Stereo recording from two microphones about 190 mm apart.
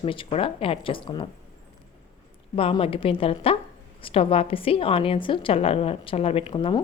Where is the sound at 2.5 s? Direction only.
30° left (ahead or behind).